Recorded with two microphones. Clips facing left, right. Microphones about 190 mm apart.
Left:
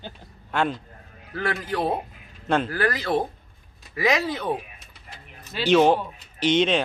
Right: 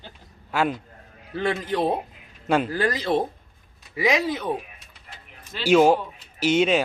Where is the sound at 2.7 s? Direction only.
20° right (ahead or behind).